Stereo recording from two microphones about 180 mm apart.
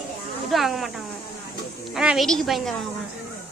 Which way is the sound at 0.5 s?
Centre (ahead or behind).